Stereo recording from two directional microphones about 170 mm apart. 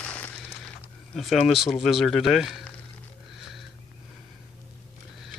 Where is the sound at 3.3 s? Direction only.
Centre (ahead or behind).